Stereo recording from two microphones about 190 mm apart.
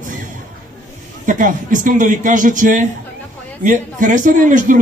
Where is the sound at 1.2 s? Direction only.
45° right (ahead or behind).